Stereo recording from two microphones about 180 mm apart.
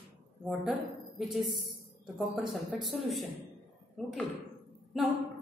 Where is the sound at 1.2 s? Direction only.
Centre (ahead or behind).